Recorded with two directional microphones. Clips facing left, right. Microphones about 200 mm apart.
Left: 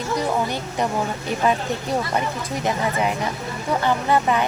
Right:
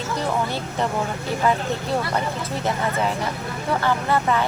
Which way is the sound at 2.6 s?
15° left (ahead or behind).